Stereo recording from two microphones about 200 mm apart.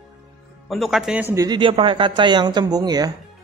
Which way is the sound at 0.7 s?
Centre (ahead or behind).